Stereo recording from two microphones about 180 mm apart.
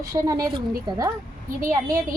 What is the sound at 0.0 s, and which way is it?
A woman's voice, 20° right (ahead or behind).